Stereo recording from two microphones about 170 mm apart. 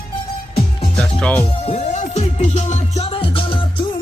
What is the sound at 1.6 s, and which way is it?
Music, 45° left (ahead or behind).